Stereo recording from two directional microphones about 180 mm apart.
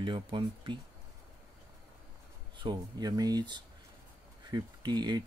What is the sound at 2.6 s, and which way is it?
Speech, 20° right (ahead or behind).